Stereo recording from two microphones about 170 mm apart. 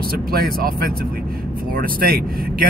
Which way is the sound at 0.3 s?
60° right (ahead or behind).